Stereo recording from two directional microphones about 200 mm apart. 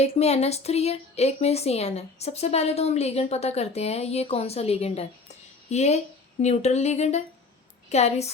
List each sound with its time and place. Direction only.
0.0 s a woman's voice: 30° left (ahead or behind)